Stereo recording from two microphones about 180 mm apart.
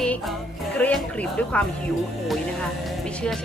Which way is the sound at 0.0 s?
5° left (ahead or behind).